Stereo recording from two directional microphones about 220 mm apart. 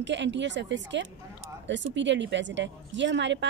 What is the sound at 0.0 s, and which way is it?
A woman's voice, 55° right (ahead or behind).